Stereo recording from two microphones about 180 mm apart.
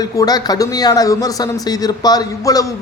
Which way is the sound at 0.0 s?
20° left (ahead or behind).